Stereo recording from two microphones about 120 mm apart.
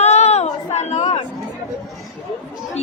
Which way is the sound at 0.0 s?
65° left (ahead or behind).